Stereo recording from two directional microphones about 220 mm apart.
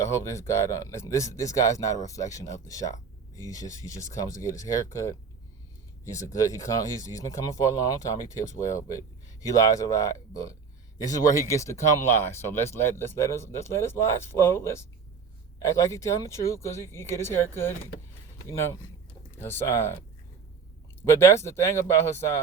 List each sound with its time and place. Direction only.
0.0 s speech: 15° left (ahead or behind)
19.4 s speech: 10° left (ahead or behind)